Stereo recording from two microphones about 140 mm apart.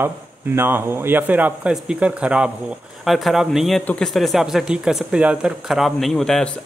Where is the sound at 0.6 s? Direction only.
15° right (ahead or behind).